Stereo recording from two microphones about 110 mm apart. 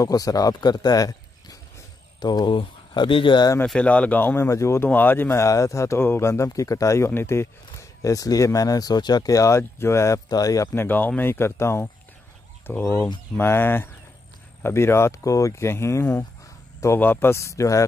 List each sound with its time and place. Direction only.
0.0 s speech: 35° left (ahead or behind); by 3.4 s 50° left (ahead or behind)
3.6 s speech: 10° left (ahead or behind); by 10.7 s 30° left (ahead or behind)
10.7 s speech: 20° left (ahead or behind)